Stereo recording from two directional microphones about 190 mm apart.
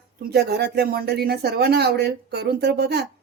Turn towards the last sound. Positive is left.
turn(degrees=-60)  # may be behind; listen again after turning